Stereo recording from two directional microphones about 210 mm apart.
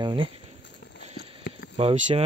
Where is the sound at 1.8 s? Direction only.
30° right (ahead or behind).